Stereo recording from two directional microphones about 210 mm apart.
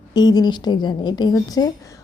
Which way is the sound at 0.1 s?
20° left (ahead or behind).